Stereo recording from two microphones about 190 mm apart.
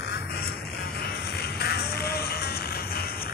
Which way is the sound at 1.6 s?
55° left (ahead or behind).